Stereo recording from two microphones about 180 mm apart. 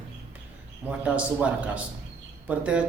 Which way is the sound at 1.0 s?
5° right (ahead or behind).